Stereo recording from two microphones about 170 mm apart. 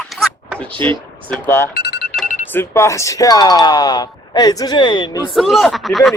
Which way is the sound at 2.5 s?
15° left (ahead or behind).